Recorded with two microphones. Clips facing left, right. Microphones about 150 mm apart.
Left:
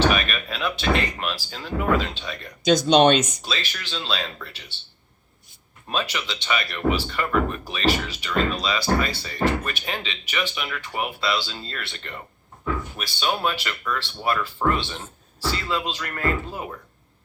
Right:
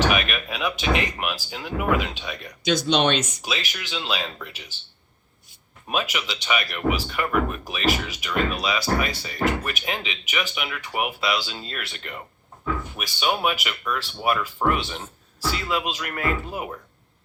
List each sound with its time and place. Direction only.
0.1 s speech: 10° right (ahead or behind)
2.6 s speech: 45° left (ahead or behind)
3.4 s speech: 10° right (ahead or behind)
5.9 s speech: 10° right (ahead or behind)